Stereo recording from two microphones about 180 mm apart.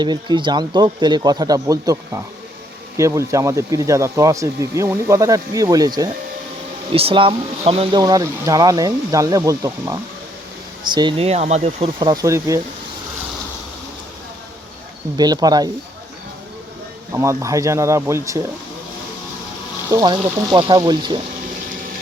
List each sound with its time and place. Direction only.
0.0 s speech: 25° right (ahead or behind)
6.9 s speech: 30° right (ahead or behind)
11.9 s speech: 25° right (ahead or behind)
15.2 s speech: 20° right (ahead or behind)
17.1 s speech: 15° right (ahead or behind)
19.9 s speech: 20° right (ahead or behind)